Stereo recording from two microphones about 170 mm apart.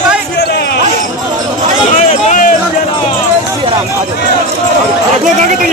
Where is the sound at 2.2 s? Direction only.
50° left (ahead or behind).